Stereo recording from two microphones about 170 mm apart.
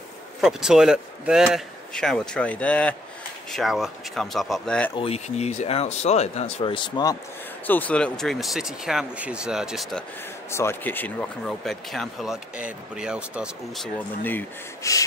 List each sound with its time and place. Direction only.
0.4 s speech: 5° right (ahead or behind)
4.9 s speech: 35° left (ahead or behind)
7.6 s speech: 10° left (ahead or behind)
10.5 s speech: 15° left (ahead or behind); by 13.8 s 5° right (ahead or behind)
14.2 s speech: 15° left (ahead or behind)